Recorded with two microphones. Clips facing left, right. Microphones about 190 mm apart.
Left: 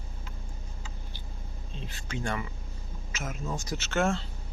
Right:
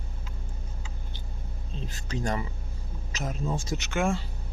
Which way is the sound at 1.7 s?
40° right (ahead or behind).